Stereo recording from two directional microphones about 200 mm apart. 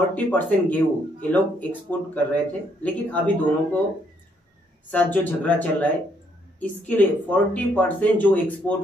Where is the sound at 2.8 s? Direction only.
5° left (ahead or behind).